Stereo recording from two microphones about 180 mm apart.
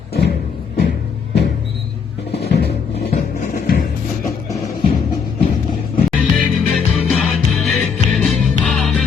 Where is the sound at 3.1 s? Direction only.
45° left (ahead or behind).